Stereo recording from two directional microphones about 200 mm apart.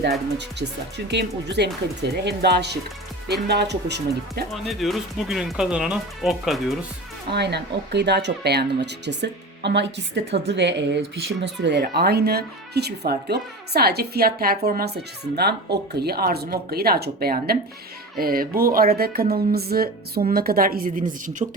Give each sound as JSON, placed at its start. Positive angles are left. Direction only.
{"t": 0.3, "sound": "speech", "side_deg": -60}
{"t": 4.5, "sound": "speech", "side_deg": 0}
{"t": 7.3, "sound": "a woman's voice", "side_deg": -55}